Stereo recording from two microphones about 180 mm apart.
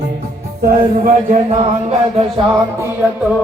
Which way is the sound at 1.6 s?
35° right (ahead or behind).